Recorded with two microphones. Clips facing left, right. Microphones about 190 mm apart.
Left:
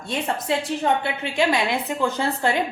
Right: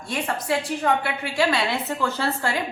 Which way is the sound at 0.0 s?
25° left (ahead or behind).